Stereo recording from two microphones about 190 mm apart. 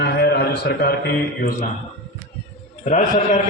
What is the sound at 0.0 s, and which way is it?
A man's voice, 60° left (ahead or behind).